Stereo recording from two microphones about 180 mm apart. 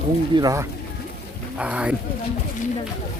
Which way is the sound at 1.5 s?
5° right (ahead or behind).